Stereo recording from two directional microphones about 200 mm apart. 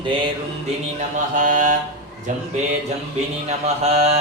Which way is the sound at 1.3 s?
40° right (ahead or behind).